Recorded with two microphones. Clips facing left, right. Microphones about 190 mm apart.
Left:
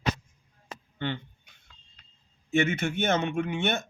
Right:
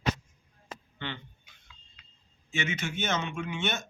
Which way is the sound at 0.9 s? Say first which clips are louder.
Left 7 dB; 45° left (ahead or behind).